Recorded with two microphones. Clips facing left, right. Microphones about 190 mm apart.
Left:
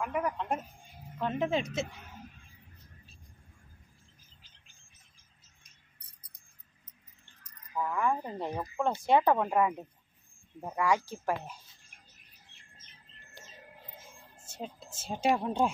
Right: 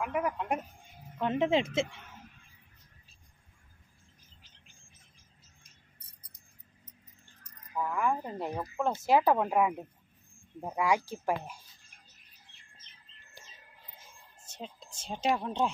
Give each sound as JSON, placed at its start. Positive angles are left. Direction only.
{"t": 0.0, "sound": "speech", "side_deg": -5}
{"t": 1.2, "sound": "speech", "side_deg": -25}
{"t": 7.7, "sound": "speech", "side_deg": 0}
{"t": 14.5, "sound": "a woman's voice", "side_deg": 5}